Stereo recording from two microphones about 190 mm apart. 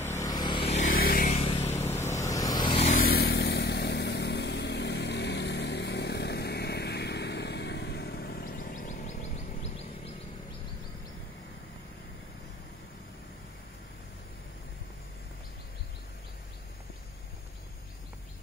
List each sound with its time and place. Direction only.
0.0 s vehicle: 15° left (ahead or behind); by 1.4 s 45° left (ahead or behind)
1.4 s vehicle: 35° left (ahead or behind)
2.1 s vehicle: 15° left (ahead or behind)
2.9 s vehicle: 50° left (ahead or behind); by 9.8 s 35° left (ahead or behind)